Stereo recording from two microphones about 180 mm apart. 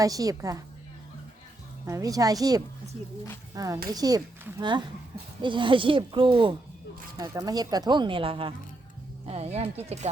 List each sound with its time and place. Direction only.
0.0 s speech: 20° right (ahead or behind)
1.9 s a woman's voice: 20° right (ahead or behind); by 10.1 s 35° right (ahead or behind)